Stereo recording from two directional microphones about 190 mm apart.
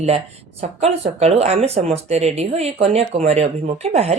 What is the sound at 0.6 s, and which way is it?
Speech, 35° right (ahead or behind).